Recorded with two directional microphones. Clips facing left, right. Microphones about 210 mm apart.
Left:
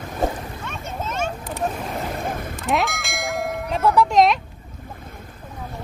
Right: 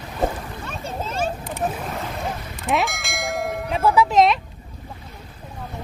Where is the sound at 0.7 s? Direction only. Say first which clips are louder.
Right 1 dB; 30° right (ahead or behind).